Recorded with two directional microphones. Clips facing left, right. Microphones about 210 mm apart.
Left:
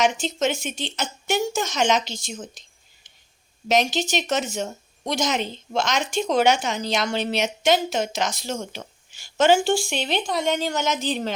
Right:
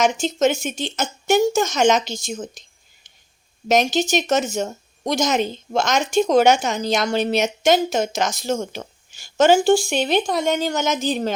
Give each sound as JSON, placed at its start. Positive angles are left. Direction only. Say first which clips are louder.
{"t": 0.0, "sound": "speech", "louder": "right 4 dB", "side_deg": -45}
{"t": 3.7, "sound": "speech", "louder": "right 4 dB", "side_deg": -45}